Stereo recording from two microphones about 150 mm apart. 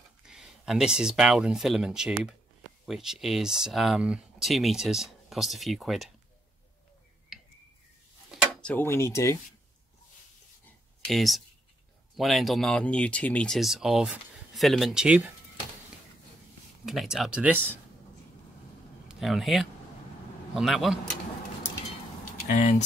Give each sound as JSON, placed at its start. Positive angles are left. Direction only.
{"t": 0.2, "sound": "speech", "side_deg": -5}
{"t": 7.3, "sound": "tick", "side_deg": -5}
{"t": 8.3, "sound": "a sound", "side_deg": 5}
{"t": 8.8, "sound": "speech", "side_deg": 15}
{"t": 11.1, "sound": "speech", "side_deg": 0}
{"t": 16.8, "sound": "speech", "side_deg": 0}
{"t": 19.0, "sound": "speech", "side_deg": 0}
{"t": 22.5, "sound": "speech", "side_deg": 55}